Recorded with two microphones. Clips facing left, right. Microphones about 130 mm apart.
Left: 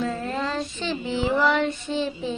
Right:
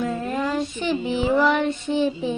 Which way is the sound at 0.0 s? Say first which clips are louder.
Right 2 dB; 20° right (ahead or behind).